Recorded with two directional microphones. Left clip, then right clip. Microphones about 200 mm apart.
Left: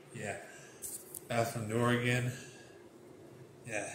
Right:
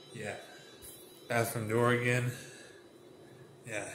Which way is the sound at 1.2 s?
25° right (ahead or behind).